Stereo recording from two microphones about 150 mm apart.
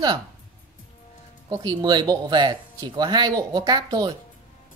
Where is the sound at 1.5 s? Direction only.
30° right (ahead or behind).